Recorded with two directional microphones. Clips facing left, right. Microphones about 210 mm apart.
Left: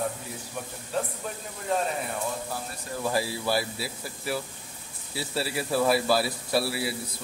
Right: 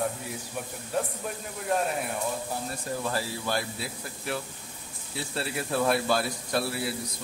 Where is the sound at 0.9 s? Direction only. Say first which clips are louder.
Even; 10° right (ahead or behind).